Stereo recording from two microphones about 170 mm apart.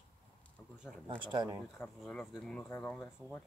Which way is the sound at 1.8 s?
5° left (ahead or behind).